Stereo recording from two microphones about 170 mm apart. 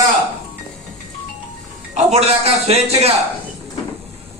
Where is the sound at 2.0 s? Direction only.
40° right (ahead or behind).